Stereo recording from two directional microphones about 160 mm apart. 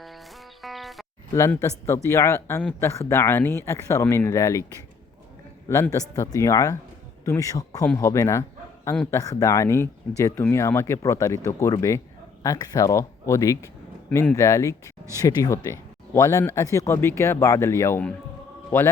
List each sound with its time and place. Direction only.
0.6 s music: centre (ahead or behind)
1.3 s speech: 20° left (ahead or behind)
5.6 s speech: 20° left (ahead or behind)